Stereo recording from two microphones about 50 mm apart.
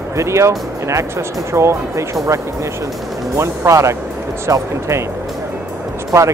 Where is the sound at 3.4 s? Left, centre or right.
Right.